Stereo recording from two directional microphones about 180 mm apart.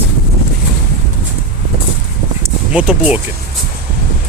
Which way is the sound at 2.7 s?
5° right (ahead or behind).